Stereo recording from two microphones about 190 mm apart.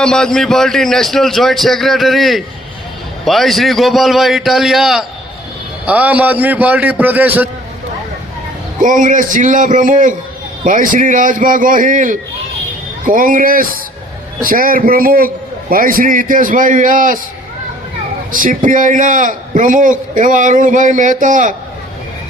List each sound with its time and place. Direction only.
0.0 s a man's voice: 5° left (ahead or behind)
8.8 s a man's voice: 45° right (ahead or behind)
18.3 s a man's voice: 45° right (ahead or behind)